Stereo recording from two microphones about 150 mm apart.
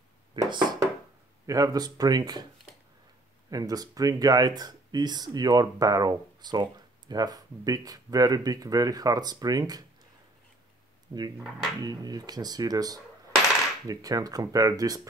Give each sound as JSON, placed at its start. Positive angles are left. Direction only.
{"t": 0.4, "sound": "speech", "side_deg": -30}
{"t": 3.4, "sound": "speech", "side_deg": -25}
{"t": 11.1, "sound": "speech", "side_deg": -30}